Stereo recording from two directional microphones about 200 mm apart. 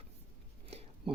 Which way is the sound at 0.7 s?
30° right (ahead or behind).